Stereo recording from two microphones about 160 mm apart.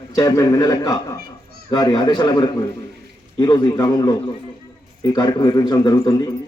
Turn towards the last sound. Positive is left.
turn(degrees=25)  # may be behind; listen again after turning